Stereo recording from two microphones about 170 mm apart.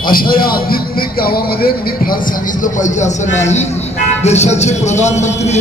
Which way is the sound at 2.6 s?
45° left (ahead or behind).